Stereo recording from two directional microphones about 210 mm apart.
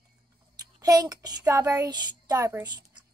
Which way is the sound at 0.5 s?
20° right (ahead or behind).